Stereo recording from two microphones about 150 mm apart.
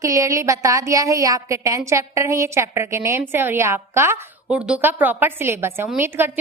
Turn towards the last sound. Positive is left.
turn(degrees=-15)  # may be behind; listen again after turning